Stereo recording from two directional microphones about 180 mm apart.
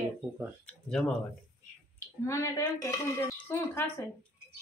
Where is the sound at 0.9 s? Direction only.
5° left (ahead or behind).